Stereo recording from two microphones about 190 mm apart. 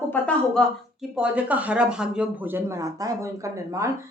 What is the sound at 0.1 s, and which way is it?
Speech, 5° left (ahead or behind).